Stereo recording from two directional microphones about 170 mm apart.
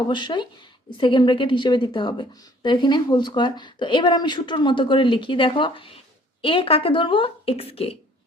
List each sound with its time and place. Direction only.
0.1 s a woman's voice: 25° left (ahead or behind)